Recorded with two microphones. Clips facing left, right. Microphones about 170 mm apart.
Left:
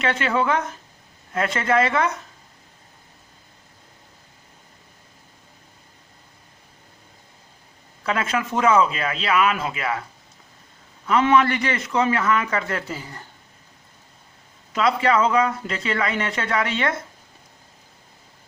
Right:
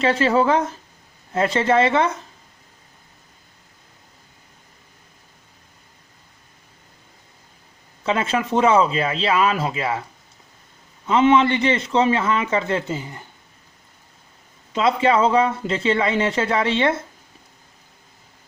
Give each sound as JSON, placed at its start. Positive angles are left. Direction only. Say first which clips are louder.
{"t": 0.0, "sound": "speech", "louder": "right 5 dB", "side_deg": -30}
{"t": 8.0, "sound": "speech", "louder": "right 3 dB", "side_deg": -25}
{"t": 11.0, "sound": "speech", "louder": "right 2 dB", "side_deg": -25}
{"t": 14.7, "sound": "speech", "louder": "right 2 dB", "side_deg": -25}